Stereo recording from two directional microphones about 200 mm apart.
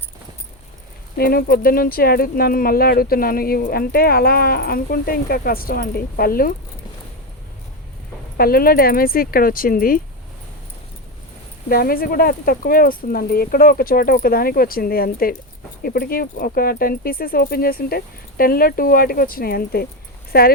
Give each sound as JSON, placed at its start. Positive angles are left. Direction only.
{"t": 1.2, "sound": "speech", "side_deg": 50}
{"t": 8.4, "sound": "speech", "side_deg": 50}
{"t": 11.7, "sound": "speech", "side_deg": 50}